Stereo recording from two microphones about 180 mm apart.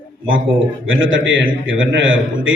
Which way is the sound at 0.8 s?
90° right.